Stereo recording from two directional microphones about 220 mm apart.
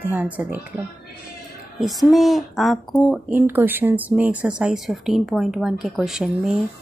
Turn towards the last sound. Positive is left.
turn(degrees=0)  # may be behind; listen again after turning